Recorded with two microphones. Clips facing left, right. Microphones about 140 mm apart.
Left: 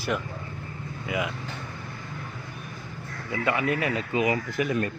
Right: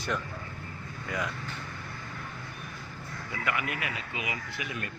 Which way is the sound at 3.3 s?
25° left (ahead or behind).